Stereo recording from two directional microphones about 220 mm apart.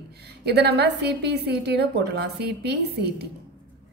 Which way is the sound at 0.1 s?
50° right (ahead or behind).